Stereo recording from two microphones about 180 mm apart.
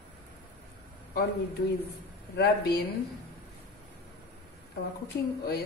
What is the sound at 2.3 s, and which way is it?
Speech, 65° left (ahead or behind).